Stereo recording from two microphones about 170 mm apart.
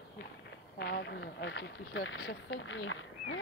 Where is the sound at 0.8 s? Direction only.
85° left.